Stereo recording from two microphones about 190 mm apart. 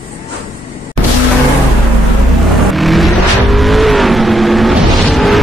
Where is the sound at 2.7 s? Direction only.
Centre (ahead or behind).